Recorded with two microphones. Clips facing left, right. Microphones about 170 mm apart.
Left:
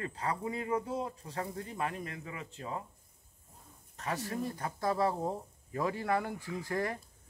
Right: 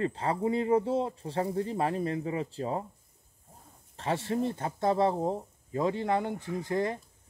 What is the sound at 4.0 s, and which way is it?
Speech, 30° right (ahead or behind).